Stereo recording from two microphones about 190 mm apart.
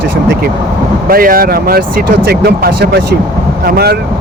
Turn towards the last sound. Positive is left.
turn(degrees=-55)  # may be behind; listen again after turning